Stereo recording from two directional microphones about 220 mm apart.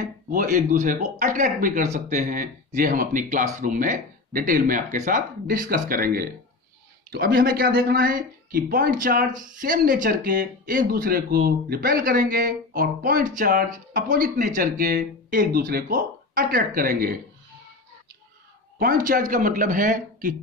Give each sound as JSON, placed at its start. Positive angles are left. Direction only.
{"t": 0.3, "sound": "speech", "side_deg": -40}
{"t": 18.8, "sound": "speech", "side_deg": -40}